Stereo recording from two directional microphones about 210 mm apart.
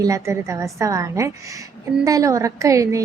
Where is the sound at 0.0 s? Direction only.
15° right (ahead or behind).